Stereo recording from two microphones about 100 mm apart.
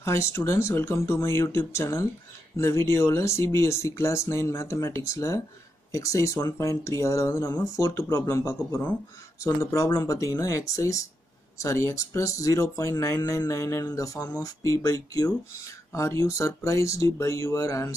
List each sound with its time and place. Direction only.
0.0 s speech: 30° left (ahead or behind)